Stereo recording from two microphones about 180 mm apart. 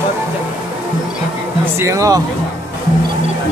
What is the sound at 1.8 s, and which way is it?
Speech, 15° right (ahead or behind).